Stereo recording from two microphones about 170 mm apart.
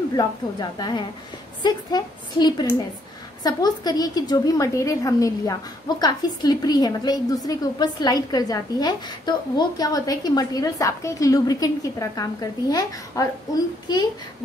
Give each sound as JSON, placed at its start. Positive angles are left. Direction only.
{"t": 0.1, "sound": "a woman's voice", "side_deg": 25}